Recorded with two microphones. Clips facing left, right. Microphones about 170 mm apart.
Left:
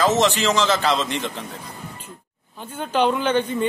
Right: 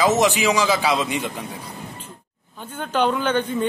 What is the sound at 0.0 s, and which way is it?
Speech, 15° right (ahead or behind).